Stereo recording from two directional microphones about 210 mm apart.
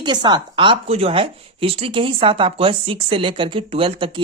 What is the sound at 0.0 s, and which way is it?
Speech, 20° right (ahead or behind).